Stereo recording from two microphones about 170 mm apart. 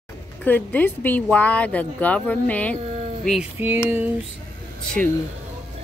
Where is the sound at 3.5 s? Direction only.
10° right (ahead or behind).